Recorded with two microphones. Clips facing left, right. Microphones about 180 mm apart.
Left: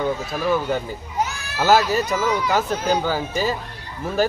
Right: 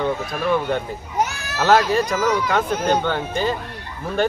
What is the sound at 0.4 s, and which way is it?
Speech, centre (ahead or behind).